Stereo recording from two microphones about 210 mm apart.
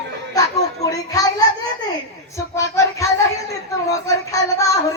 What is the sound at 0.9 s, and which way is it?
Speech, 15° left (ahead or behind).